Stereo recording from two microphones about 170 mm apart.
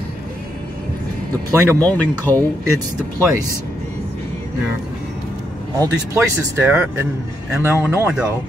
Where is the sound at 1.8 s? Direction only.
10° left (ahead or behind).